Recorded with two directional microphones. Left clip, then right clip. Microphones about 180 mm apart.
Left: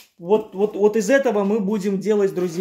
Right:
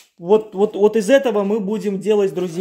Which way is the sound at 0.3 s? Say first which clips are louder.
Right 4 dB; 30° right (ahead or behind).